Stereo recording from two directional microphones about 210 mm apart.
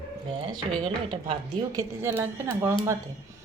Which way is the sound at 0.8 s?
20° right (ahead or behind).